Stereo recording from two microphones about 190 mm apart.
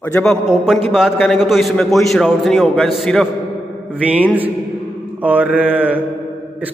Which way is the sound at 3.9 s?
5° right (ahead or behind).